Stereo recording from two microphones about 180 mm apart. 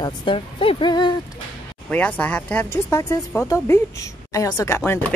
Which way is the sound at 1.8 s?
10° left (ahead or behind).